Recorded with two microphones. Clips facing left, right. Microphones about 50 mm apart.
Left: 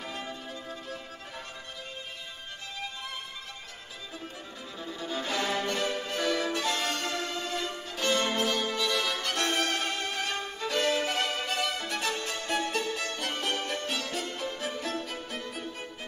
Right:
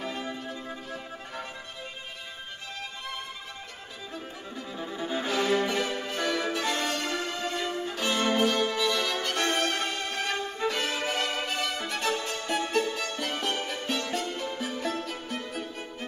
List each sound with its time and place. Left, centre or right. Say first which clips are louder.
0.0 s music: right 4 dB; centre
0.3 s music: right 3 dB; centre
4.7 s violin: right 3 dB; right
5.3 s violin: right 4 dB; centre
8.3 s music: right 4 dB; centre
10.7 s violin: left 6 dB; centre
11.9 s music: right 2 dB; centre